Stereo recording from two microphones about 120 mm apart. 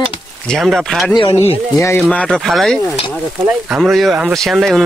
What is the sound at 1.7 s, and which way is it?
Speech, 25° left (ahead or behind).